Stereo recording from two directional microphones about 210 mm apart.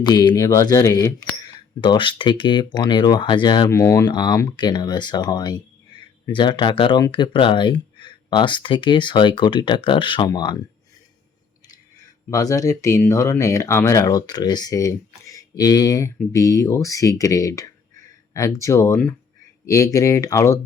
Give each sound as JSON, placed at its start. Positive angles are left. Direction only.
{"t": 0.0, "sound": "speech", "side_deg": 20}
{"t": 12.3, "sound": "speech", "side_deg": 15}